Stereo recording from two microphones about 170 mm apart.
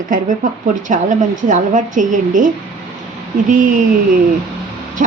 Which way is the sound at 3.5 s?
50° right (ahead or behind).